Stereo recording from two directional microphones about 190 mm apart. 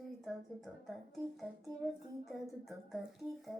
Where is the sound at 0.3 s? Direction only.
Centre (ahead or behind).